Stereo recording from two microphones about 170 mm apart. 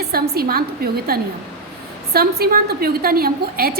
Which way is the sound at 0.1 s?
60° right (ahead or behind).